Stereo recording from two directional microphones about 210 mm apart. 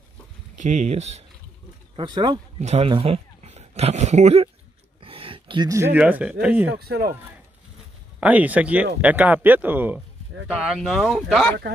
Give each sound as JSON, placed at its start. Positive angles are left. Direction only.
{"t": 0.6, "sound": "speech", "side_deg": -35}
{"t": 2.0, "sound": "speech", "side_deg": -20}
{"t": 5.0, "sound": "gasp", "side_deg": -25}
{"t": 6.4, "sound": "speech", "side_deg": -5}
{"t": 8.2, "sound": "speech", "side_deg": -5}